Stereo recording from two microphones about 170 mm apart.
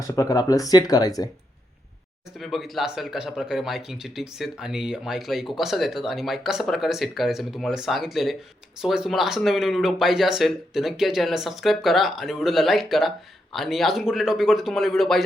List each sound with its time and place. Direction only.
0.1 s speech: 20° left (ahead or behind)
2.4 s speech: centre (ahead or behind)